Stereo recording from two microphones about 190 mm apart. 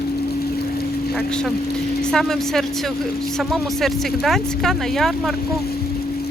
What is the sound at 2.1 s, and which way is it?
Speech, centre (ahead or behind).